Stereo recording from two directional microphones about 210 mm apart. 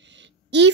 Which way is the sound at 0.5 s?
55° right (ahead or behind).